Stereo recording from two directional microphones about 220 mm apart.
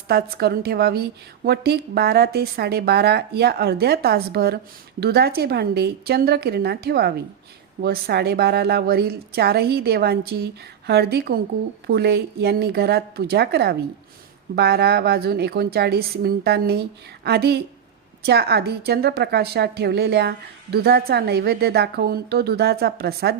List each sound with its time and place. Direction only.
0.1 s a woman's voice: 45° right (ahead or behind)